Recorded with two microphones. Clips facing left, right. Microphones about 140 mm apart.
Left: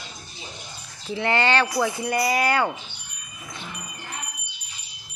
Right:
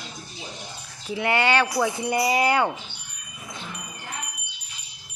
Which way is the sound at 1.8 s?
20° right (ahead or behind).